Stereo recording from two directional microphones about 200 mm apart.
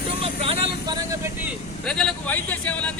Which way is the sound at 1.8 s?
5° left (ahead or behind).